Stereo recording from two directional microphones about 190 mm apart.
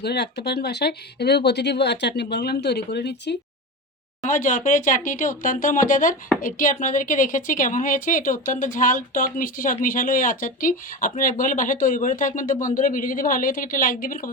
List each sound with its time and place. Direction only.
0.0 s speech: 60° left (ahead or behind)
4.2 s a woman's voice: 40° left (ahead or behind)